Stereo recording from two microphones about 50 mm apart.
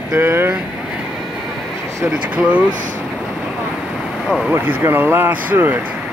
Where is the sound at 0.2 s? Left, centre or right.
Right.